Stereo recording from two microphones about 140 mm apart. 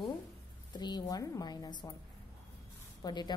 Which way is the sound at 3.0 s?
30° left (ahead or behind).